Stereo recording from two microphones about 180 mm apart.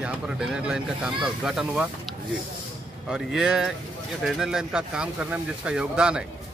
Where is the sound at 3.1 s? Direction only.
5° right (ahead or behind).